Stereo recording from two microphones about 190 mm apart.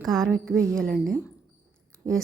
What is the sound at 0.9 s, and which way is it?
Speech, 50° right (ahead or behind).